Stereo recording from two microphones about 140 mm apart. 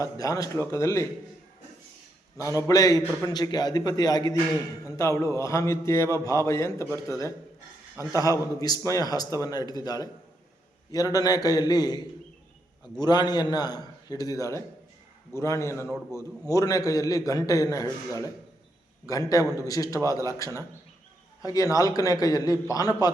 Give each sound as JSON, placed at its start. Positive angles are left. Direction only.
{"t": 0.0, "sound": "a man's voice", "side_deg": 25}
{"t": 2.6, "sound": "a man's voice", "side_deg": 25}